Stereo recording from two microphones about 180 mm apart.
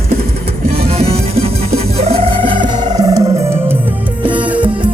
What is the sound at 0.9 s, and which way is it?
Music, 35° right (ahead or behind).